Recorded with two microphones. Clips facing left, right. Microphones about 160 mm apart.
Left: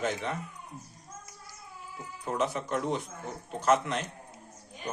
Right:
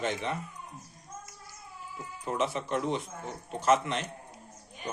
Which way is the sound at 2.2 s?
Centre (ahead or behind).